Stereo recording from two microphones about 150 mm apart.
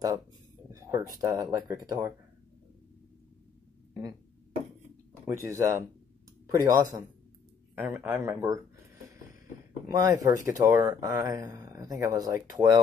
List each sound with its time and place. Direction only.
0.7 s speech: 20° right (ahead or behind)
5.2 s speech: 20° right (ahead or behind)
9.8 s speech: 25° right (ahead or behind)